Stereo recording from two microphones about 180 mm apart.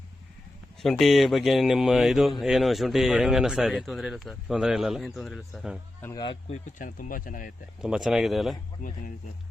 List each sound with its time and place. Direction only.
0.8 s speech: centre (ahead or behind)
6.5 s speech: 45° left (ahead or behind)
7.8 s speech: 5° right (ahead or behind)
8.8 s speech: 45° left (ahead or behind)